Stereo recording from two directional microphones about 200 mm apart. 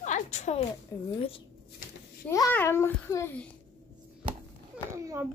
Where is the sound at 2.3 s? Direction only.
15° left (ahead or behind).